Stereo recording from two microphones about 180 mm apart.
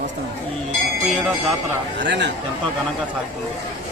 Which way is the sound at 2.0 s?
75° right (ahead or behind).